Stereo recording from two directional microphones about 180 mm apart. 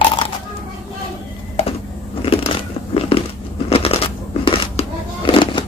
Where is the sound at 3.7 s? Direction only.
30° left (ahead or behind).